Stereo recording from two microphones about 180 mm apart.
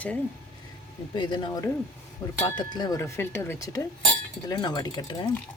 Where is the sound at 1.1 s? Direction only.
25° left (ahead or behind).